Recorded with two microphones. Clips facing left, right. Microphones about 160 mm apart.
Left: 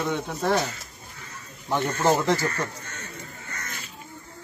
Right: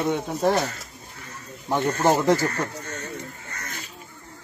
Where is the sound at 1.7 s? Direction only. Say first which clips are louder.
Right 2 dB; 40° right (ahead or behind).